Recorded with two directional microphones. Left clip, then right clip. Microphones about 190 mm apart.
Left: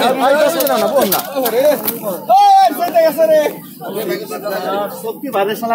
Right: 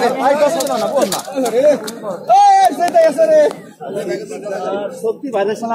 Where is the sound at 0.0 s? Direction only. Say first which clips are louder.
Left 1 dB; 20° left (ahead or behind).